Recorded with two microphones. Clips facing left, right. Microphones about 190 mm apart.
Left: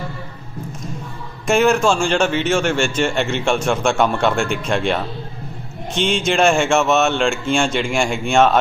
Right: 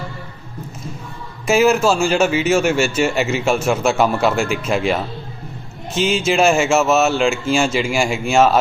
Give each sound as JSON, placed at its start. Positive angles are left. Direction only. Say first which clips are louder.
{"t": 1.5, "sound": "a man's voice", "louder": "right 1 dB", "side_deg": -5}